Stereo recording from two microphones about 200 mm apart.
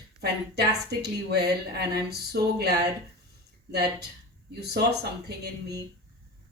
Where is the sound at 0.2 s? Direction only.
55° right (ahead or behind).